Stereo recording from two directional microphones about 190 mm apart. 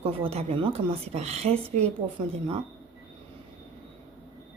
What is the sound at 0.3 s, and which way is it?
Speech, 30° right (ahead or behind).